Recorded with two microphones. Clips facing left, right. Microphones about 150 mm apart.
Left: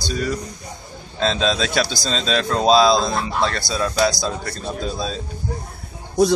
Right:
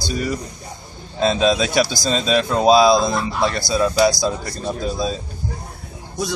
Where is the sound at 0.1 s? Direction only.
10° right (ahead or behind).